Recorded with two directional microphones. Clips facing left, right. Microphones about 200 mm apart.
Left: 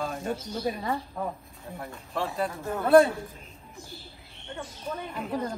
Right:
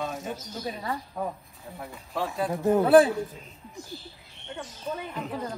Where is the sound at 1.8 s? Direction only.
Centre (ahead or behind).